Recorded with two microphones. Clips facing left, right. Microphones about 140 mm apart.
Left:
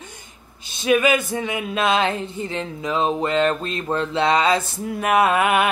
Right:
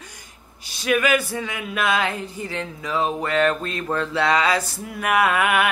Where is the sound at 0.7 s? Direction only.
20° left (ahead or behind).